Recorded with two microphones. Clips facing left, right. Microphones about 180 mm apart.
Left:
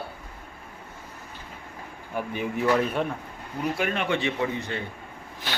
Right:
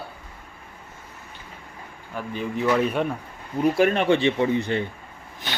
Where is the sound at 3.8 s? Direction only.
35° right (ahead or behind).